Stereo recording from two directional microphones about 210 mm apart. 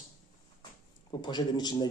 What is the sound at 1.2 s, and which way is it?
Speech, 20° left (ahead or behind).